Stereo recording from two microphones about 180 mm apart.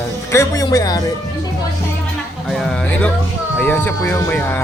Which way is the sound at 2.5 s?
Centre (ahead or behind).